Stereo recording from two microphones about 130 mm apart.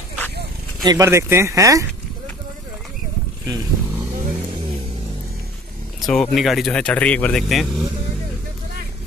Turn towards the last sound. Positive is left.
turn(degrees=0)  # may be behind; listen again after turning